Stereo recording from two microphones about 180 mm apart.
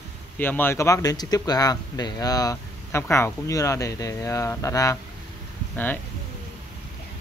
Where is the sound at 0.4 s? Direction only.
10° left (ahead or behind).